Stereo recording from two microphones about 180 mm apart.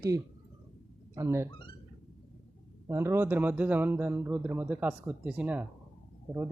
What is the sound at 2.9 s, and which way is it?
A man's voice, 15° right (ahead or behind).